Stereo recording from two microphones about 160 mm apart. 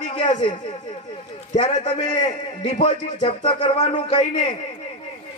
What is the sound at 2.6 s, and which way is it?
Music, 40° left (ahead or behind).